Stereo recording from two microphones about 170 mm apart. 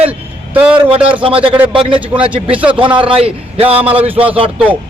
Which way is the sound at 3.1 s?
35° right (ahead or behind).